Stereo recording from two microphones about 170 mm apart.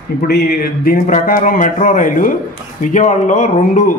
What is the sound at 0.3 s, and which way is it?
A man's voice, 60° left (ahead or behind).